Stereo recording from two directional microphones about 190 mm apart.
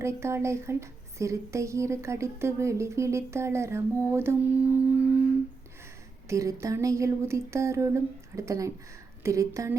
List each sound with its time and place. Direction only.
0.0 s speech: 15° right (ahead or behind)
6.2 s speech: 15° right (ahead or behind)